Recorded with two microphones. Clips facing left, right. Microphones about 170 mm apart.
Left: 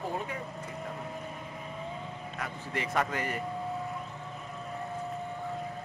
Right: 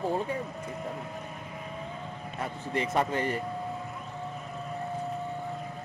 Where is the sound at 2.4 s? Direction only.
25° right (ahead or behind).